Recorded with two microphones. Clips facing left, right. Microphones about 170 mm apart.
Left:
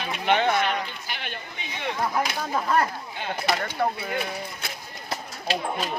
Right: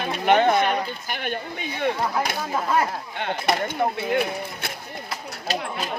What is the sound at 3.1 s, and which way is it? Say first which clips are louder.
Speech: right 3 dB; 60° right (ahead or behind).